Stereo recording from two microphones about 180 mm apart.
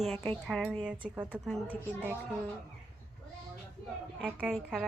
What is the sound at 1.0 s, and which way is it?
Speech, 10° right (ahead or behind).